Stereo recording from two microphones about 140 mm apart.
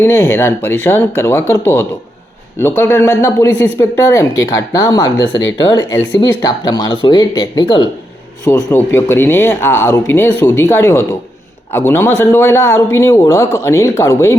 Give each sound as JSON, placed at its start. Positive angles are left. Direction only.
{"t": 0.0, "sound": "speech", "side_deg": 15}
{"t": 8.4, "sound": "speech", "side_deg": 20}